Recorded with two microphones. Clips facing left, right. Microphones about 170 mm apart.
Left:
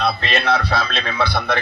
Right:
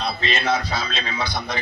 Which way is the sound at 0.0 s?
65° left (ahead or behind).